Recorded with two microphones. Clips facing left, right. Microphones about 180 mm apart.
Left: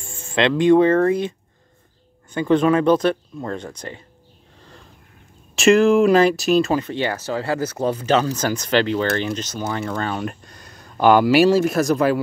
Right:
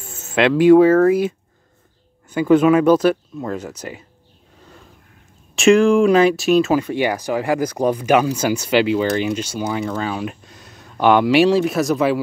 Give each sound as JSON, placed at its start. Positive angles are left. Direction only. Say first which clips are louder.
{"t": 0.0, "sound": "speech", "louder": "right 2 dB", "side_deg": -5}
{"t": 5.6, "sound": "speech", "louder": "right 1 dB", "side_deg": 0}